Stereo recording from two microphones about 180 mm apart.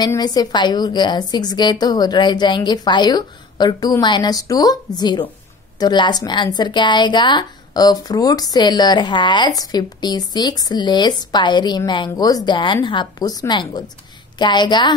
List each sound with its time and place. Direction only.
0.0 s a woman's voice: 20° left (ahead or behind)